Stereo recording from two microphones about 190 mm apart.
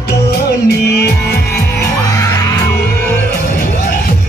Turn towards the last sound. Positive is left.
turn(degrees=15)  # may be behind; listen again after turning